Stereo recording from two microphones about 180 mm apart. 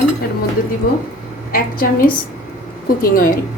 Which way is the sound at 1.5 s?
50° left (ahead or behind).